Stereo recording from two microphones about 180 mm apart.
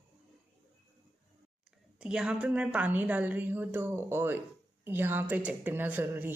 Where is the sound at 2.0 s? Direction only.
5° right (ahead or behind).